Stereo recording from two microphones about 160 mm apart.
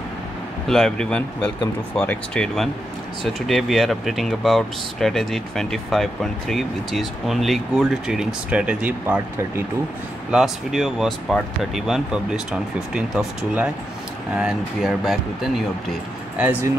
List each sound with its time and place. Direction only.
0.7 s speech: 5° left (ahead or behind)
10.3 s speech: centre (ahead or behind)